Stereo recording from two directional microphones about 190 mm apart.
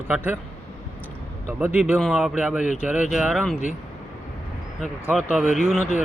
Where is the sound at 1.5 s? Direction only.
10° right (ahead or behind).